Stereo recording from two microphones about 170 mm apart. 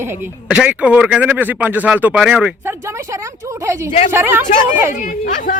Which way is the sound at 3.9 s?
45° left (ahead or behind).